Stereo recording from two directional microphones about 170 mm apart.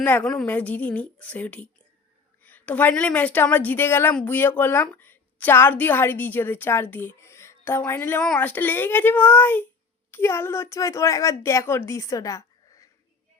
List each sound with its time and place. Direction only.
0.0 s a woman's voice: 10° left (ahead or behind)